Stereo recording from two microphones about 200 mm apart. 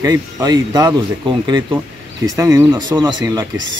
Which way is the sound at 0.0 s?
20° right (ahead or behind).